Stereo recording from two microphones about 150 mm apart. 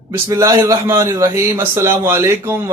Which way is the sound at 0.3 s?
20° right (ahead or behind).